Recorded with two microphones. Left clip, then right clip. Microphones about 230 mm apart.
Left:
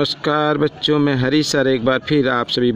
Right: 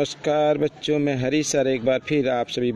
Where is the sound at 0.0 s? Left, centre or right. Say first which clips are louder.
Left 3 dB; left.